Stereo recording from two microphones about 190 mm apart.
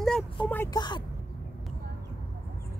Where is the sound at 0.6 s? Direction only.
20° left (ahead or behind).